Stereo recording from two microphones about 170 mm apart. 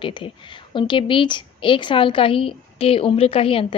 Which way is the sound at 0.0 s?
30° left (ahead or behind).